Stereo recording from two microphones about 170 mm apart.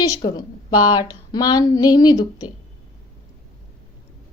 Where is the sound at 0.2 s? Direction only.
25° left (ahead or behind).